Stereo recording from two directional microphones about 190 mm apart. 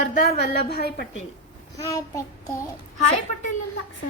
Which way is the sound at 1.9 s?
15° left (ahead or behind).